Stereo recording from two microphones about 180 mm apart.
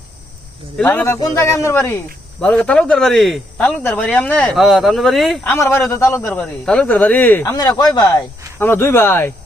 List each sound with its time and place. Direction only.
0.8 s speech: 10° left (ahead or behind)